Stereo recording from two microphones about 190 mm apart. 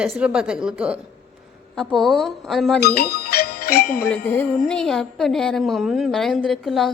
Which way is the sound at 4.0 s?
10° left (ahead or behind).